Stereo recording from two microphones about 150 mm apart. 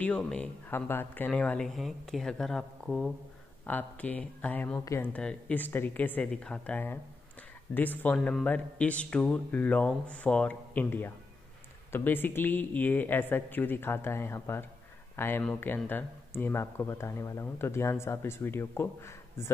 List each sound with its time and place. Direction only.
0.0 s speech: 10° left (ahead or behind)